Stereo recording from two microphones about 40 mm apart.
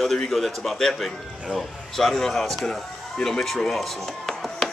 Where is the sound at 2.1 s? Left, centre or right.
Centre.